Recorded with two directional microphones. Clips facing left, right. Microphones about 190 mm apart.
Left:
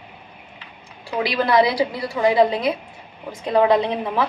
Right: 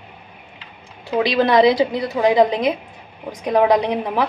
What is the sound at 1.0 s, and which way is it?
A woman's voice, 20° right (ahead or behind).